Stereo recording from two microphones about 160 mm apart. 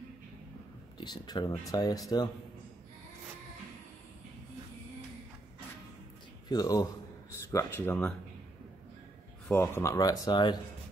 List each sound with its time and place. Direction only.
0.9 s speech: 25° left (ahead or behind)
6.5 s speech: 25° left (ahead or behind)
7.5 s speech: 15° left (ahead or behind)
9.5 s speech: 15° left (ahead or behind)